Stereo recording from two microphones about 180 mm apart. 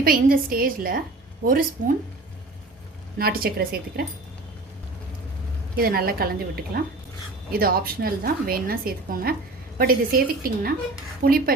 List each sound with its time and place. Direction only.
0.0 s a woman's voice: 55° right (ahead or behind)
3.2 s a woman's voice: 55° right (ahead or behind)
5.7 s a woman's voice: 55° right (ahead or behind)